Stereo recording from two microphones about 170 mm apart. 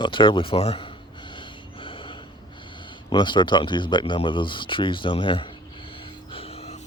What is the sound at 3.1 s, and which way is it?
Speech, 25° left (ahead or behind).